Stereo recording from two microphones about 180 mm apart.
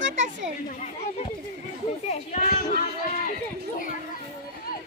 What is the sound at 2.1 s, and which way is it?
Speech, 50° left (ahead or behind).